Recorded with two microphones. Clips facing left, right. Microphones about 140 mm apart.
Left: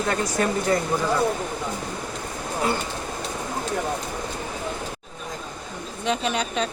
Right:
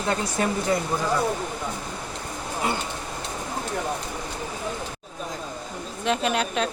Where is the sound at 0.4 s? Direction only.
20° right (ahead or behind).